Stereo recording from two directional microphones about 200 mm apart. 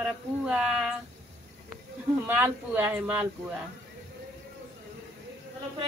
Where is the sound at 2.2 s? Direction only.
10° right (ahead or behind).